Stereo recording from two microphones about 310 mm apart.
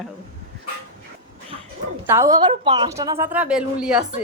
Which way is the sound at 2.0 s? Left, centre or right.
Centre.